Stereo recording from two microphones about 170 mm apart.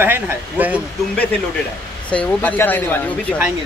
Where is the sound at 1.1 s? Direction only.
10° left (ahead or behind).